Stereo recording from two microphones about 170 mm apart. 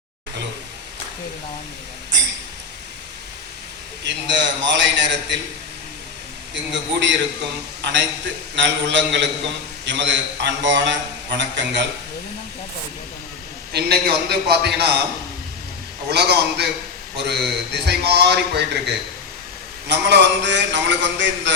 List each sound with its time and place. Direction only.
4.0 s a man's voice: 90° right
7.8 s a man's voice: 90° right
13.7 s a man's voice: 70° right (ahead or behind)
16.0 s a man's voice: 75° right (ahead or behind); by 21.5 s 90° right